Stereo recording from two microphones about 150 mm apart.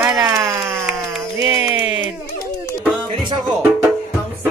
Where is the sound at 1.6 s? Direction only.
15° right (ahead or behind).